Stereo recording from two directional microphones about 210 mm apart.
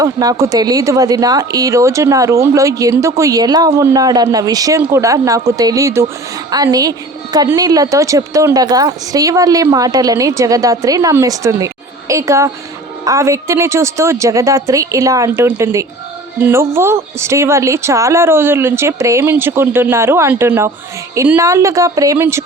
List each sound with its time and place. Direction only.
0.0 s speech: 15° right (ahead or behind)